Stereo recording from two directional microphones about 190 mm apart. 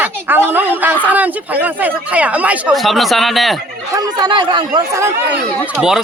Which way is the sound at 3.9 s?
25° right (ahead or behind).